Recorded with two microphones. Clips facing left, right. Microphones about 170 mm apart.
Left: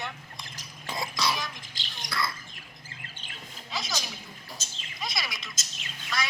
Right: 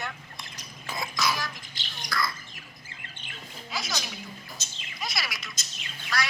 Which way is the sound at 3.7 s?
Centre (ahead or behind).